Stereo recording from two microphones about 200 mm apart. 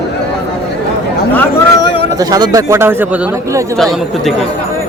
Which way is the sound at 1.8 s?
25° left (ahead or behind).